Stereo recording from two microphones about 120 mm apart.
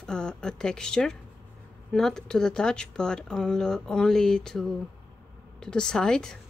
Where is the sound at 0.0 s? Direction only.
5° left (ahead or behind).